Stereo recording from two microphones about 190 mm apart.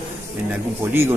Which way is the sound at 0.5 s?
10° right (ahead or behind).